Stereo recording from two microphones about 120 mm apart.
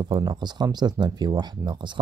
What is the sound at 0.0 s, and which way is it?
Speech, 40° right (ahead or behind).